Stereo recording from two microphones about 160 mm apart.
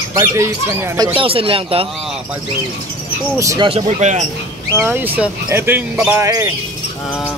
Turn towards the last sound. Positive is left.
turn(degrees=-20)  # may be behind; listen again after turning